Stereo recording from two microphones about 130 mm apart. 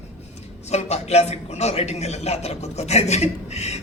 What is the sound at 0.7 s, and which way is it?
A man's voice, 55° left (ahead or behind).